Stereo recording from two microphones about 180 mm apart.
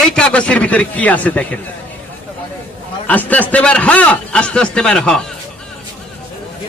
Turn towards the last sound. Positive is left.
turn(degrees=5)  # may be behind; listen again after turning